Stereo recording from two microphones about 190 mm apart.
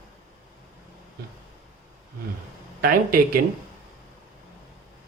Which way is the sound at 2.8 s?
50° right (ahead or behind).